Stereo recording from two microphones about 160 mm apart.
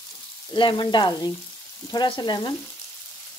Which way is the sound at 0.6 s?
30° left (ahead or behind).